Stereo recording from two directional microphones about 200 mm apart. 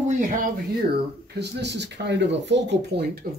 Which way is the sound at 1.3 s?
60° right (ahead or behind).